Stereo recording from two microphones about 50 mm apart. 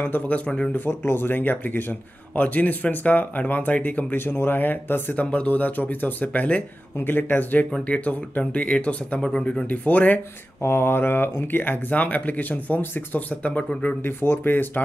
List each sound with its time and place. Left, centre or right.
0.3 s speech: left
0.7 s speech: left
5.1 s speech: left
7.0 s speech: left
10.6 s speech: left
14.0 s speech: left